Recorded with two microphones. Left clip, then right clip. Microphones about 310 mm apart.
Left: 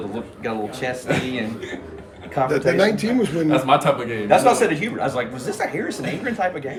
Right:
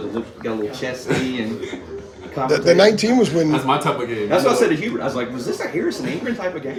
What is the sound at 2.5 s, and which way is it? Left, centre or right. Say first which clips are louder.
Speech: right 6 dB; centre.